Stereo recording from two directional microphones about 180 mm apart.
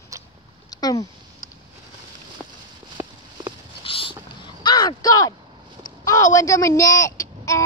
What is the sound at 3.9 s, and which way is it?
Vehicle, 30° left (ahead or behind).